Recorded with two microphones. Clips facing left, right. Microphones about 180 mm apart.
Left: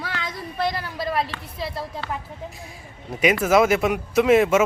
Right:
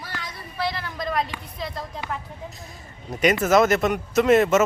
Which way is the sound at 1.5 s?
5° left (ahead or behind).